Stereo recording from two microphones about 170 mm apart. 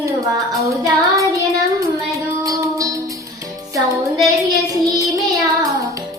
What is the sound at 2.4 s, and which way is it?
Music, 20° right (ahead or behind).